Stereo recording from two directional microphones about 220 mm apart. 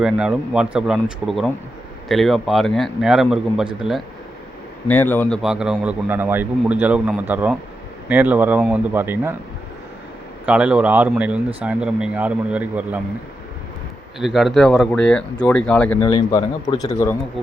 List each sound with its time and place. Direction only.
0.0 s a man's voice: 5° right (ahead or behind)
10.4 s a man's voice: 5° right (ahead or behind)
14.2 s a man's voice: centre (ahead or behind)
16.0 s a man's voice: 15° left (ahead or behind)